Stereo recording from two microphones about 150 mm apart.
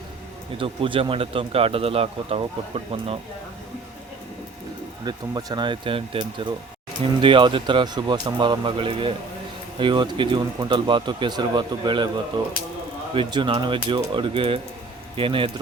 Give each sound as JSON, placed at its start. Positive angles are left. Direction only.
{"t": 0.6, "sound": "speech", "side_deg": -35}
{"t": 5.0, "sound": "speech", "side_deg": -25}